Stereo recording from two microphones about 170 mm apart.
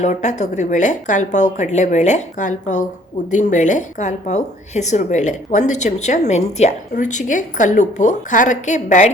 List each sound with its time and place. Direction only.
0.0 s a woman's voice: 45° left (ahead or behind)